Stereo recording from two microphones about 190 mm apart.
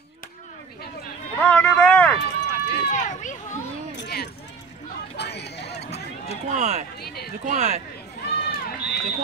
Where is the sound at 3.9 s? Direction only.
60° left (ahead or behind).